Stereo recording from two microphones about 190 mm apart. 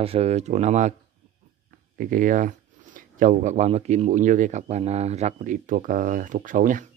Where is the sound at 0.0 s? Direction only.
30° right (ahead or behind).